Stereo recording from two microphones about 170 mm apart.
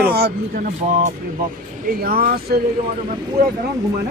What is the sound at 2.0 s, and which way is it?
Speech, 60° right (ahead or behind).